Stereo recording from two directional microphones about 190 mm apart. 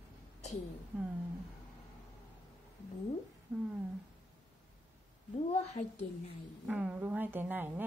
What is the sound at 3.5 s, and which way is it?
Speech, 10° right (ahead or behind).